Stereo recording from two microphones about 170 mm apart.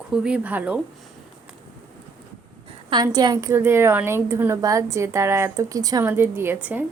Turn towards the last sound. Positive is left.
turn(degrees=-10)  # may be behind; listen again after turning